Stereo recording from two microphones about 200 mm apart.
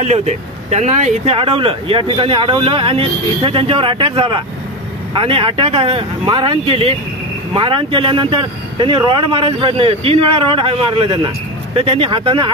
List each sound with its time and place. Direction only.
0.0 s speech: 35° right (ahead or behind)